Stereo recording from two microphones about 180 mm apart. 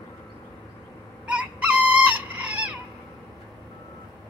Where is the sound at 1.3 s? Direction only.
5° right (ahead or behind).